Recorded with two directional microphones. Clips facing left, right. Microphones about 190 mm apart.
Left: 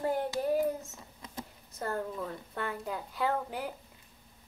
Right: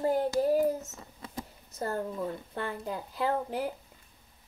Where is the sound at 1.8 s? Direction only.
30° right (ahead or behind).